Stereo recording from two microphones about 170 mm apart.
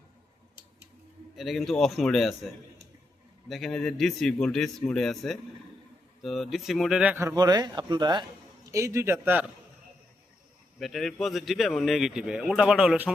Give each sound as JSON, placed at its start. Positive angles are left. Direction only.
{"t": 1.4, "sound": "speech", "side_deg": 0}
{"t": 3.5, "sound": "speech", "side_deg": 0}
{"t": 10.8, "sound": "speech", "side_deg": 0}